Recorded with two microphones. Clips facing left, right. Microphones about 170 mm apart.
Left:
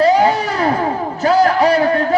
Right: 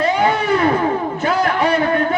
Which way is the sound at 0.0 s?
35° left (ahead or behind).